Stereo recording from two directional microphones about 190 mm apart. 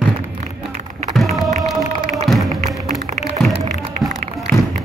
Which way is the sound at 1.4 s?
Centre (ahead or behind).